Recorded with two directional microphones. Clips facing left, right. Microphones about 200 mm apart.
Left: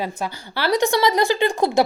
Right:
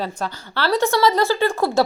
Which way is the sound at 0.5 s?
15° left (ahead or behind).